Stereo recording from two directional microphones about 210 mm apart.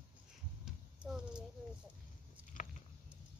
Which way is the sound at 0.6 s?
5° right (ahead or behind).